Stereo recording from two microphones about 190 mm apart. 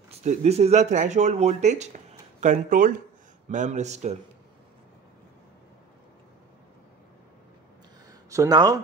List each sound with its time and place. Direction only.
0.1 s speech: 35° right (ahead or behind)
8.3 s speech: 20° right (ahead or behind)